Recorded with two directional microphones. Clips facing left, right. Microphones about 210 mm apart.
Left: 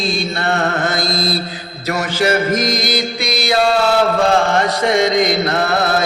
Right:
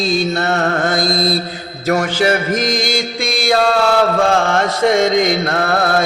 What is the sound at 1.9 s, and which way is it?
Music, 50° right (ahead or behind).